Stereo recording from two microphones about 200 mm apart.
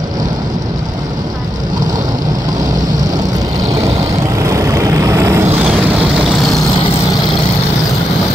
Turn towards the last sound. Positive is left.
turn(degrees=0)  # may be behind; listen again after turning